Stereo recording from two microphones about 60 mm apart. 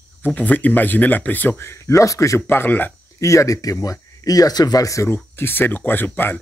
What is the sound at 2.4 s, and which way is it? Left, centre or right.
Speech, left.